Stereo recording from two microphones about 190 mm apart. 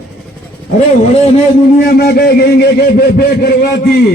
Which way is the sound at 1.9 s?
55° left (ahead or behind).